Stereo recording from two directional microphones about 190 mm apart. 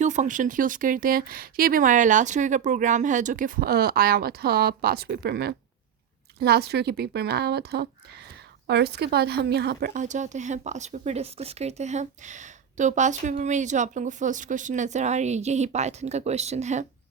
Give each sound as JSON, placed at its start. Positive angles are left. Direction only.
{"t": 0.0, "sound": "a woman's voice", "side_deg": -40}
{"t": 9.9, "sound": "speech", "side_deg": -40}